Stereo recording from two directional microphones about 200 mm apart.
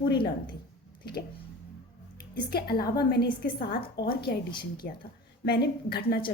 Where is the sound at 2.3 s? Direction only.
50° left (ahead or behind).